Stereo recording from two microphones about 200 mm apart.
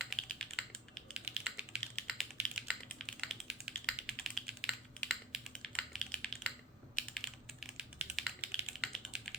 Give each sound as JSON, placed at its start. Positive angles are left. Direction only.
{"t": 0.0, "sound": "typing", "side_deg": 0}